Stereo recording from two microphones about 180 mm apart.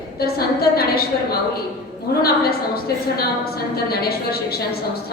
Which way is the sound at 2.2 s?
55° left (ahead or behind).